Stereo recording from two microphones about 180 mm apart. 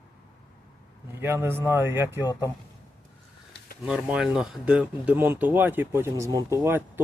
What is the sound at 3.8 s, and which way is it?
Speech, 5° right (ahead or behind).